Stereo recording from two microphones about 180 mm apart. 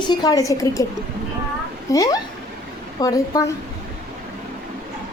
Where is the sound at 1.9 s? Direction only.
20° left (ahead or behind).